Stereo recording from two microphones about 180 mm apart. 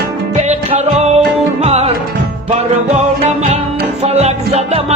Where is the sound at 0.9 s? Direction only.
35° right (ahead or behind).